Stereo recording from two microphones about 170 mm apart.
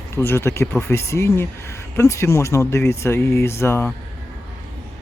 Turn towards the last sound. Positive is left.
turn(degrees=15)  # may be behind; listen again after turning